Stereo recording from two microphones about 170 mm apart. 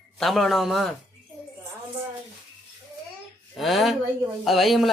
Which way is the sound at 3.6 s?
Centre (ahead or behind).